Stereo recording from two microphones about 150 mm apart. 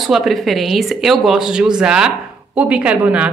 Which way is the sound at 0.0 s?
Centre (ahead or behind).